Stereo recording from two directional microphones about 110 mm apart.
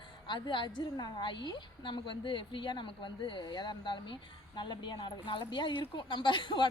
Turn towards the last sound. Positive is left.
turn(degrees=45)  # may be behind; listen again after turning